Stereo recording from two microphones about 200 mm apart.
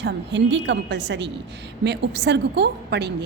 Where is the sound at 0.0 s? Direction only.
60° right (ahead or behind).